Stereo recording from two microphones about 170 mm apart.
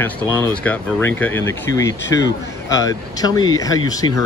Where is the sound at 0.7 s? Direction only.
10° left (ahead or behind).